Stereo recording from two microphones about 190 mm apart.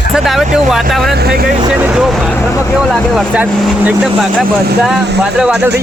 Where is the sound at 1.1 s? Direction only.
55° right (ahead or behind).